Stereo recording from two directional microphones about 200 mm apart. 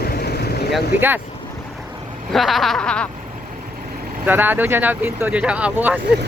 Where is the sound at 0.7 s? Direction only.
10° right (ahead or behind).